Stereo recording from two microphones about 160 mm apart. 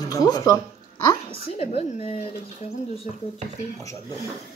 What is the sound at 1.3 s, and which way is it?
Speech, 40° left (ahead or behind).